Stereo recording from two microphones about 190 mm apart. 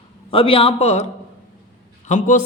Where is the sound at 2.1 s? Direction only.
40° left (ahead or behind).